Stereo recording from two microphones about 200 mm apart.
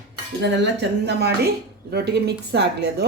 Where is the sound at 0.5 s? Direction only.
60° right (ahead or behind).